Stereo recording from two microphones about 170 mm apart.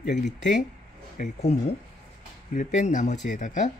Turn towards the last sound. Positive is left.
turn(degrees=45)  # may be behind; listen again after turning